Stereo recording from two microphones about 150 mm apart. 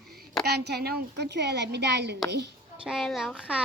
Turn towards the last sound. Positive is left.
turn(degrees=-5)  # may be behind; listen again after turning